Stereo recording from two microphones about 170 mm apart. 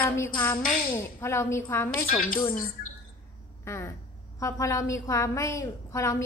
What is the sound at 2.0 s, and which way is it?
Speech, 55° left (ahead or behind).